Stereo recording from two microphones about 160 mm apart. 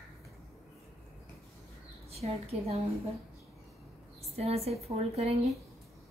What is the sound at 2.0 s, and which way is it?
Speech, 40° right (ahead or behind).